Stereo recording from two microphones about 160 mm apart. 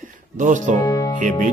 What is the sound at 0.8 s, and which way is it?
Speech, 20° left (ahead or behind).